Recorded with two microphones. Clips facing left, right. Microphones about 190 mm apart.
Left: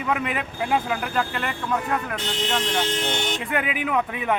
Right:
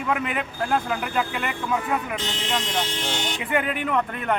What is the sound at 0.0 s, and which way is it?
Speech, centre (ahead or behind).